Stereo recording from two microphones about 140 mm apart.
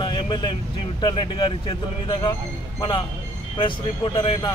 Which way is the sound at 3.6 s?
40° left (ahead or behind).